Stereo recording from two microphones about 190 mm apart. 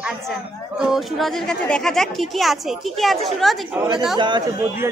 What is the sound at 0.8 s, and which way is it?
A man's voice, centre (ahead or behind).